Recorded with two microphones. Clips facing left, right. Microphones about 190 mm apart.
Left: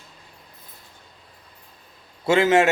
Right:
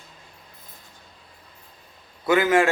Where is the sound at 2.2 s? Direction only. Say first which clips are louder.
Left 2 dB; 25° left (ahead or behind).